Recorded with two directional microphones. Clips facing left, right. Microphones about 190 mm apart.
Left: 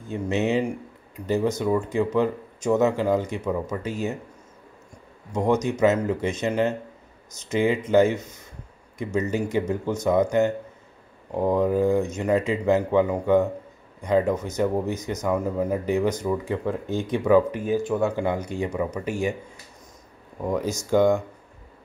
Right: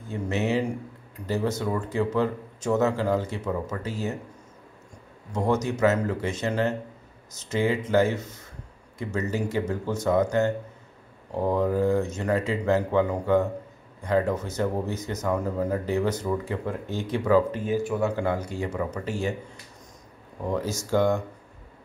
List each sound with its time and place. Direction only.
0.1 s speech: 20° left (ahead or behind)
5.3 s speech: 15° left (ahead or behind)
20.4 s speech: 15° left (ahead or behind)